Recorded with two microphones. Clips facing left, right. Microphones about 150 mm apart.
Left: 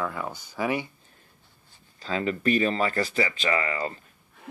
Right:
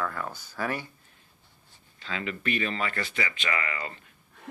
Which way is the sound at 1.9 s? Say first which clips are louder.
Left 7 dB; 35° left (ahead or behind).